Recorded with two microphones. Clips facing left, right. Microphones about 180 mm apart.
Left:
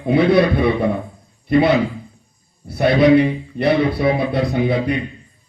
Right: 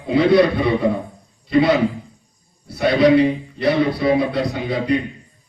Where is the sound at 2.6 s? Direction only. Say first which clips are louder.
Left 1 dB; 55° left (ahead or behind).